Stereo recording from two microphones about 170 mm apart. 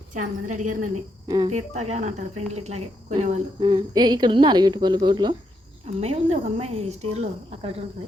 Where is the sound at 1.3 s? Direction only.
25° right (ahead or behind).